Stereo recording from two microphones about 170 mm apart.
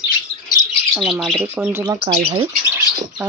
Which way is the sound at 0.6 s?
45° right (ahead or behind).